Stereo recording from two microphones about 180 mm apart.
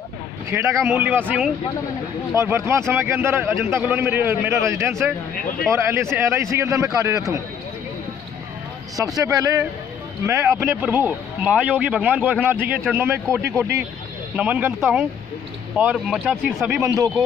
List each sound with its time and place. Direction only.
0.5 s a man's voice: 15° right (ahead or behind)
2.3 s a man's voice: 15° right (ahead or behind)
5.3 s speech: 50° left (ahead or behind)
5.7 s a man's voice: 15° right (ahead or behind)
8.9 s a man's voice: 20° right (ahead or behind); by 16.8 s 5° right (ahead or behind)